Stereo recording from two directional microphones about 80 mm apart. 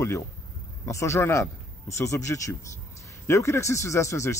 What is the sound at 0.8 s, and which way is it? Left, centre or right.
Speech, left.